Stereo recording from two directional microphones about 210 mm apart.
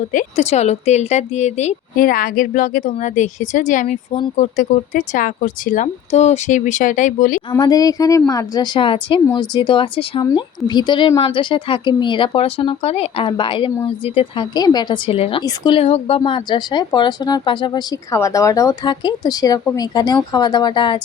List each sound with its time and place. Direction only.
0.1 s speech: 35° left (ahead or behind)
7.5 s a woman's voice: 20° left (ahead or behind)